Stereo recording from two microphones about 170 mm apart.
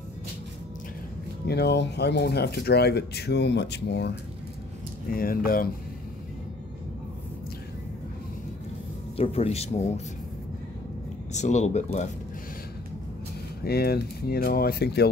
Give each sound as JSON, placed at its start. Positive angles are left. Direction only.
{"t": 1.5, "sound": "speech", "side_deg": 80}
{"t": 5.1, "sound": "speech", "side_deg": 60}
{"t": 9.1, "sound": "speech", "side_deg": 35}
{"t": 11.3, "sound": "speech", "side_deg": 45}
{"t": 13.7, "sound": "speech", "side_deg": 65}